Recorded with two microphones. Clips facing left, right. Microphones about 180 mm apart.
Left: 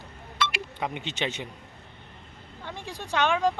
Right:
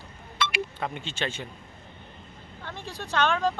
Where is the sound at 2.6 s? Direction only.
15° left (ahead or behind).